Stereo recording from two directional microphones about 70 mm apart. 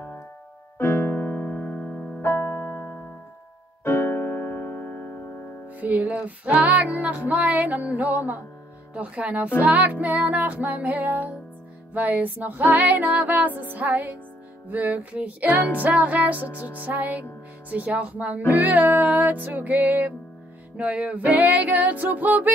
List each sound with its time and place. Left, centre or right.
0.7 s keyboard: left
2.2 s electric piano: left
3.8 s music: left
5.8 s music: right
8.9 s speech: centre
9.6 s music: right